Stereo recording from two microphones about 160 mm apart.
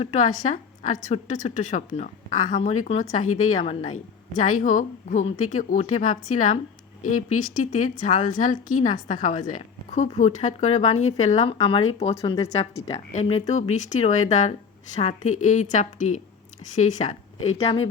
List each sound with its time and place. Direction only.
0.0 s speech: 45° left (ahead or behind)
3.6 s speech: 30° left (ahead or behind)
4.4 s speech: 55° left (ahead or behind)
11.5 s speech: 35° left (ahead or behind)
12.4 s speech: 20° left (ahead or behind)
12.9 s speech: 40° left (ahead or behind)